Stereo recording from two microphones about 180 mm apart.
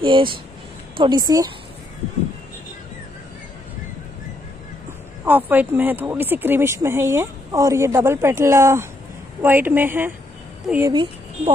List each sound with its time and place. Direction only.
0.0 s a woman's voice: 25° right (ahead or behind)
5.2 s speech: 10° right (ahead or behind)
10.9 s speech: 25° right (ahead or behind)